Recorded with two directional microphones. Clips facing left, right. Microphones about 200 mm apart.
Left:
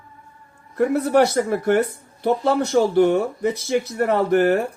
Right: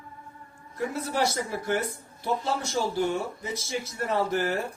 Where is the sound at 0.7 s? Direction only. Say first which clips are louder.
Left 12 dB; 60° left (ahead or behind).